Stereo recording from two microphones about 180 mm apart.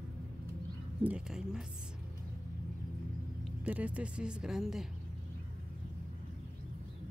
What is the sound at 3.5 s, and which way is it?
Speech, 10° right (ahead or behind).